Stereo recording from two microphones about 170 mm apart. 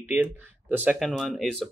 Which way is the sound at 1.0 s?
Centre (ahead or behind).